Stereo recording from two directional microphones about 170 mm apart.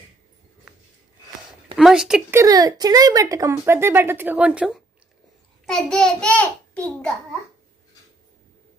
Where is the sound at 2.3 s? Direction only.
20° right (ahead or behind); by 6.8 s 5° left (ahead or behind).